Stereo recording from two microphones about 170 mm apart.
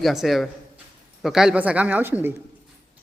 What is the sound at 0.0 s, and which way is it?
Speech, centre (ahead or behind).